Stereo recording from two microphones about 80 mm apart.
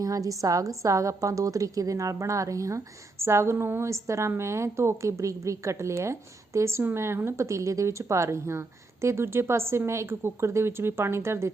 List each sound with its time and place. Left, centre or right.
0.0 s a woman's voice: right